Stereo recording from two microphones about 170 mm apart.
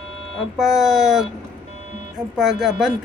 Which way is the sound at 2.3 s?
Centre (ahead or behind).